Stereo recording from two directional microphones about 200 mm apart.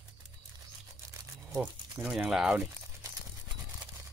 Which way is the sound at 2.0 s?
5° right (ahead or behind).